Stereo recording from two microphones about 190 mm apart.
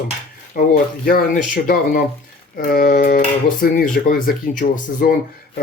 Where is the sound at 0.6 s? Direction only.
45° left (ahead or behind).